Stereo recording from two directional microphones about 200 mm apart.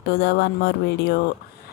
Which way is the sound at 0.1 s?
55° left (ahead or behind).